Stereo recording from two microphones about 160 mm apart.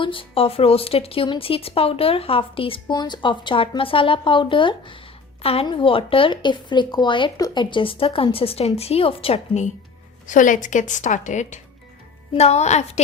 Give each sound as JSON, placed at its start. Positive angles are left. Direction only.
{"t": 0.0, "sound": "speech", "side_deg": 35}
{"t": 10.2, "sound": "speech", "side_deg": 55}